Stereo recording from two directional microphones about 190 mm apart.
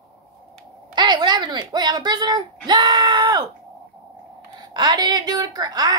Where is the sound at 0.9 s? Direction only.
25° right (ahead or behind).